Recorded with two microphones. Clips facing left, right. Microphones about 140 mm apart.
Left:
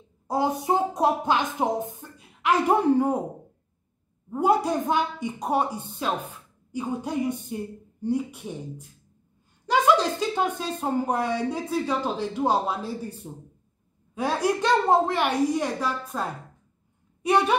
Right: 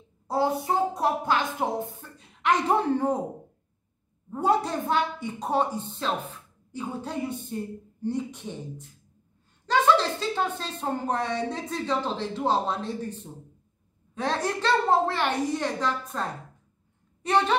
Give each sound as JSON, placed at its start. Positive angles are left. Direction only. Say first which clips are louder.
{"t": 0.3, "sound": "a woman's voice", "louder": "left 1 dB", "side_deg": 15}
{"t": 4.3, "sound": "a woman's voice", "louder": "left 2 dB", "side_deg": 10}